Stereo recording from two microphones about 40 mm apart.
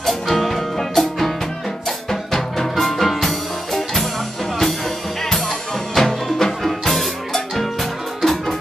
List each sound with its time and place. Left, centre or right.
0.0 s music: centre
5.9 s music: centre